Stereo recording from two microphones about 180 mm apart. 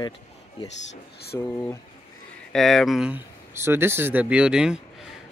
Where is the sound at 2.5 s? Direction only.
Centre (ahead or behind).